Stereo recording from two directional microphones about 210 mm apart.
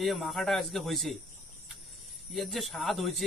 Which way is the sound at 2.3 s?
Centre (ahead or behind).